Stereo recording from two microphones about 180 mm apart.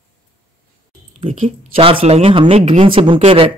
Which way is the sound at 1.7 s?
30° right (ahead or behind).